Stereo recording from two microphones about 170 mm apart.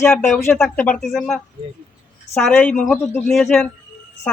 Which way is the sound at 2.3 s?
5° left (ahead or behind).